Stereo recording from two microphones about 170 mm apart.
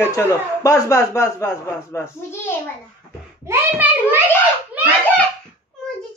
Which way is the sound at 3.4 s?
15° right (ahead or behind).